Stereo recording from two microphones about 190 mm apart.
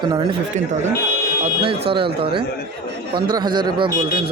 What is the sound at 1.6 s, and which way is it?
Speech, 30° right (ahead or behind).